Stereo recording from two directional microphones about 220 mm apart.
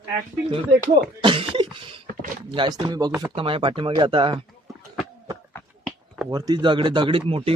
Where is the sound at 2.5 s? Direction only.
20° right (ahead or behind).